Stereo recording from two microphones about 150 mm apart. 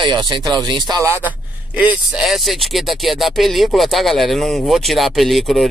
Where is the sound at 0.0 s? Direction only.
30° right (ahead or behind).